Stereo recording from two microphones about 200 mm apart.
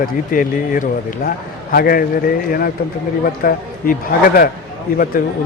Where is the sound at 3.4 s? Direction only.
45° left (ahead or behind).